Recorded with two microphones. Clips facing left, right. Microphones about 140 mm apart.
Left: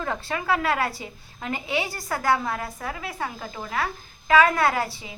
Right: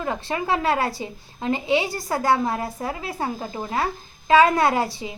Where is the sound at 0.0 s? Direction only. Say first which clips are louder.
Right 3 dB; 20° right (ahead or behind).